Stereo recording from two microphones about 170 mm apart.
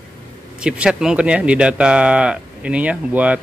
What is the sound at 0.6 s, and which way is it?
Speech, 5° right (ahead or behind).